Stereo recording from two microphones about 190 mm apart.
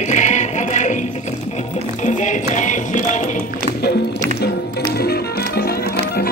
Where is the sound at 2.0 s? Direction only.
40° left (ahead or behind).